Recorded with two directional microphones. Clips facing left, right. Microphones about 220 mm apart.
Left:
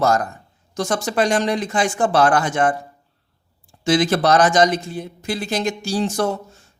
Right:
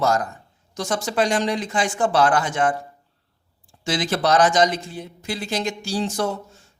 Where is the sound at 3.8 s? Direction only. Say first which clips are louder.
Left 5 dB; 50° left (ahead or behind).